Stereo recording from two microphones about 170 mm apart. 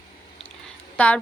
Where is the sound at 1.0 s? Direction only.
5° left (ahead or behind).